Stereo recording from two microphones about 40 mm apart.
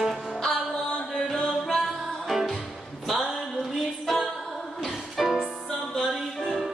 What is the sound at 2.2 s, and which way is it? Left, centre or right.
Music, centre.